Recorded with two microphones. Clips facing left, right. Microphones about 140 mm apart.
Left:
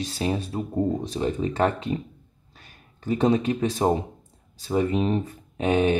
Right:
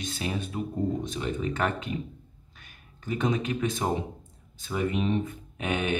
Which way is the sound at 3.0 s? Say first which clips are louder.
Left 6 dB; 35° left (ahead or behind).